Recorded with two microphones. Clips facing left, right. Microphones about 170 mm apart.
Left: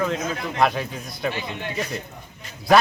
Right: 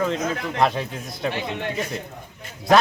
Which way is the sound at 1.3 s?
55° right (ahead or behind).